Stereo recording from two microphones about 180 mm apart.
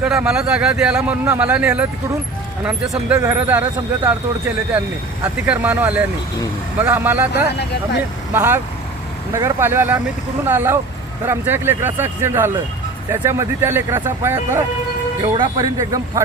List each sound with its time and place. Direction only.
0.0 s a man's voice: 5° right (ahead or behind)
5.5 s a man's voice: 10° right (ahead or behind)
7.5 s speech: 65° left (ahead or behind)
8.3 s a man's voice: 10° right (ahead or behind)
15.2 s speech: 25° right (ahead or behind)